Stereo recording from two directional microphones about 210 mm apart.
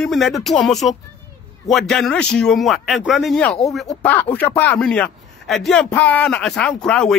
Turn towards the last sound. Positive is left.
turn(degrees=5)  # may be behind; listen again after turning